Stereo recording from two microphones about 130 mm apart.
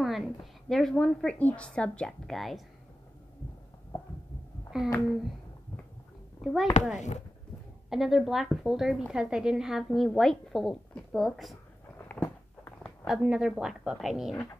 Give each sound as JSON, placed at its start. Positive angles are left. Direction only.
{"t": 0.0, "sound": "a woman's voice", "side_deg": 0}
{"t": 4.7, "sound": "a sound", "side_deg": -5}
{"t": 6.4, "sound": "a woman's voice", "side_deg": 0}
{"t": 6.9, "sound": "speech", "side_deg": 65}
{"t": 7.9, "sound": "a woman's voice", "side_deg": 0}
{"t": 12.0, "sound": "a sound", "side_deg": 15}
{"t": 13.0, "sound": "a woman's voice", "side_deg": -5}